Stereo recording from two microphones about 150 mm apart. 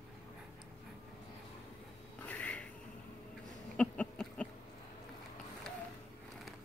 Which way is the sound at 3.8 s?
5° left (ahead or behind).